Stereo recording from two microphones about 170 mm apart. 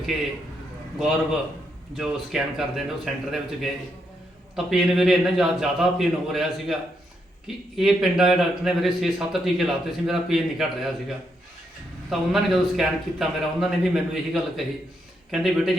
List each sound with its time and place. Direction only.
0.9 s a man's voice: 5° right (ahead or behind)
12.3 s a man's voice: centre (ahead or behind)